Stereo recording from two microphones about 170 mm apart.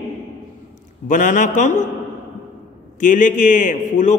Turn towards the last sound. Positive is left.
turn(degrees=50)  # may be behind; listen again after turning